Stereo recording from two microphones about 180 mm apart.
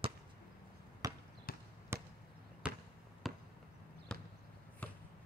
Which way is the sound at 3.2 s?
Centre (ahead or behind).